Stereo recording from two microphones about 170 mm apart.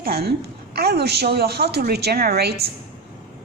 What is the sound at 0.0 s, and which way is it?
A woman's voice, 65° right (ahead or behind).